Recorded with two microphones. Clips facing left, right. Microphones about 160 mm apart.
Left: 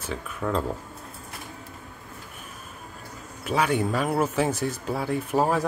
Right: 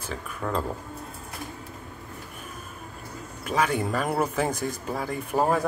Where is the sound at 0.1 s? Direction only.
Centre (ahead or behind).